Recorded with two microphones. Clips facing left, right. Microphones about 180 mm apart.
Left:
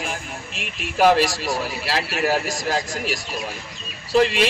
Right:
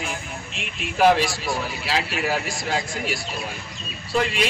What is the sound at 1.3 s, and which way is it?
A man's voice, 40° left (ahead or behind).